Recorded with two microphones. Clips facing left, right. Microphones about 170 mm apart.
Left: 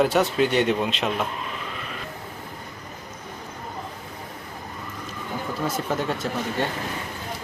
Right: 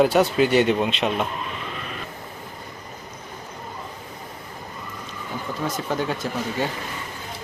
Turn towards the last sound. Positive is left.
turn(degrees=0)  # may be behind; listen again after turning